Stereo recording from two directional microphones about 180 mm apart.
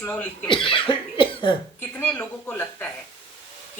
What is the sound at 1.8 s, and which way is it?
Speech, 10° left (ahead or behind).